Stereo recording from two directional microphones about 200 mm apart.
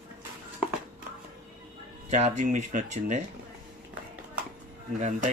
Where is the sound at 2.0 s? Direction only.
35° right (ahead or behind).